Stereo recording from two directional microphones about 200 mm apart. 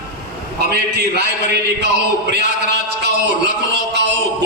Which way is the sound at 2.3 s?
55° right (ahead or behind).